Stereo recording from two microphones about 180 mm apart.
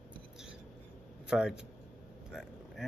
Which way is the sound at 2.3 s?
Centre (ahead or behind).